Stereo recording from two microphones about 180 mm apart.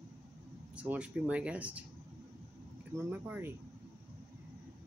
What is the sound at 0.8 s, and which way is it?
Speech, 5° right (ahead or behind).